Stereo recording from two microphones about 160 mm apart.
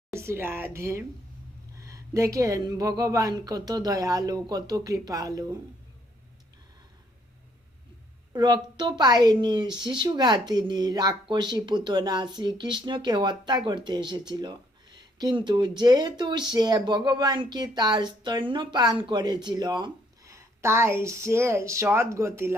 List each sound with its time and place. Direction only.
0.1 s a woman's voice: 15° right (ahead or behind)
8.3 s a woman's voice: 25° right (ahead or behind)